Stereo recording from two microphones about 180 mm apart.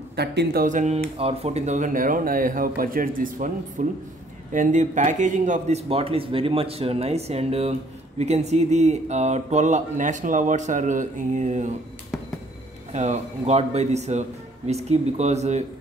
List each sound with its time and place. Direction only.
0.1 s speech: 65° right (ahead or behind); by 11.7 s 40° right (ahead or behind)
12.9 s speech: 40° right (ahead or behind)